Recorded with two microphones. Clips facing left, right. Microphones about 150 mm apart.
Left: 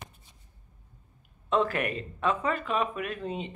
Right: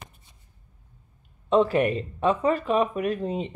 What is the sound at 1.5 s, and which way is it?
Speech, 30° right (ahead or behind).